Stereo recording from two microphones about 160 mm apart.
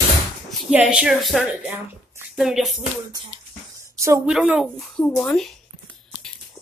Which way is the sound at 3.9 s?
20° right (ahead or behind).